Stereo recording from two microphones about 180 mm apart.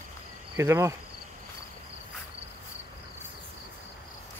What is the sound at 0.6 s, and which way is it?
Speech, 15° right (ahead or behind).